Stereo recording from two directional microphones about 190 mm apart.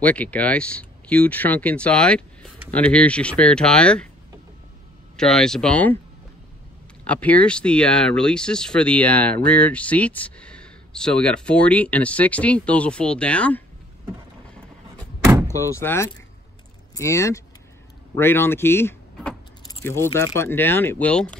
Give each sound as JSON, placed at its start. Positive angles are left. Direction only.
{"t": 0.0, "sound": "speech", "side_deg": 10}
{"t": 5.1, "sound": "speech", "side_deg": 5}
{"t": 7.1, "sound": "speech", "side_deg": 5}
{"t": 15.4, "sound": "speech", "side_deg": 15}